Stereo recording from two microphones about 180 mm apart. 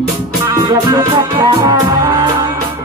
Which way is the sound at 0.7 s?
20° right (ahead or behind).